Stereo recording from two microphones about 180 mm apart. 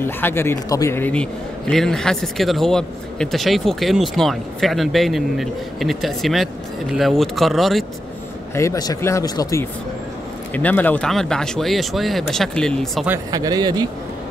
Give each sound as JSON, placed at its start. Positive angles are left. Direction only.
{"t": 0.0, "sound": "a man's voice", "side_deg": 15}
{"t": 8.5, "sound": "a man's voice", "side_deg": 20}
{"t": 13.3, "sound": "a man's voice", "side_deg": -20}